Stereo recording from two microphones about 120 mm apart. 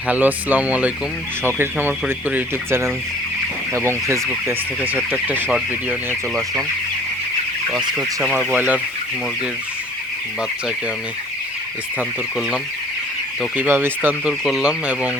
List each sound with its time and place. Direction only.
0.1 s speech: 15° right (ahead or behind)
7.9 s speech: 10° right (ahead or behind)
13.6 s speech: 20° right (ahead or behind)